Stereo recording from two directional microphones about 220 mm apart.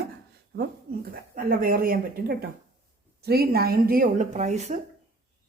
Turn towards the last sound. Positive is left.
turn(degrees=-30)  # may be behind; listen again after turning